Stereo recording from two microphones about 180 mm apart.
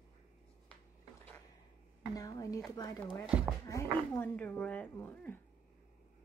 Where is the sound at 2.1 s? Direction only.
20° left (ahead or behind).